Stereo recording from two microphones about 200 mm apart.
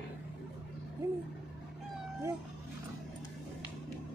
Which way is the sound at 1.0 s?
15° right (ahead or behind).